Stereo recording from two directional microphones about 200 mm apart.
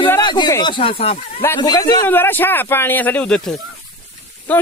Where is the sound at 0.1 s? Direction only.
20° left (ahead or behind).